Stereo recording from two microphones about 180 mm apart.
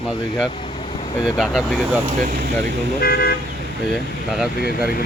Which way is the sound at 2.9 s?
60° left (ahead or behind).